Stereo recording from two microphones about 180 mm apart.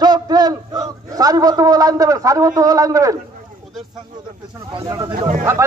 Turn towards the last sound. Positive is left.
turn(degrees=-50)  # may be behind; listen again after turning